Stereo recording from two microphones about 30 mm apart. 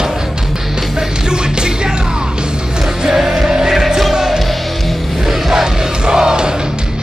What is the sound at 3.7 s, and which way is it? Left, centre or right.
Music, centre.